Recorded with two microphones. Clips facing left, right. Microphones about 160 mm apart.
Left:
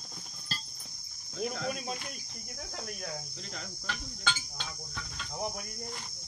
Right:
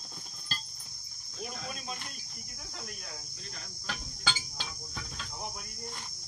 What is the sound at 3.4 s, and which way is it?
Cricket, 80° left.